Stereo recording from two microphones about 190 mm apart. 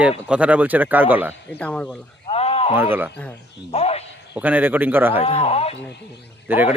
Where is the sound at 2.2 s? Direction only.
30° left (ahead or behind).